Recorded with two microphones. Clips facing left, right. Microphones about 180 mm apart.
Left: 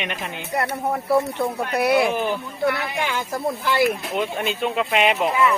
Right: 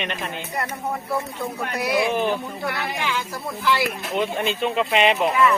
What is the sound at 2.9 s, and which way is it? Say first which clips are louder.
Speech: left 2 dB; 50° left (ahead or behind).